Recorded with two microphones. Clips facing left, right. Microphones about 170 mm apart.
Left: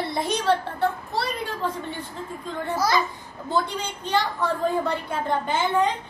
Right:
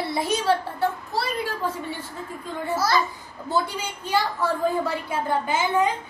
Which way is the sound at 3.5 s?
5° right (ahead or behind).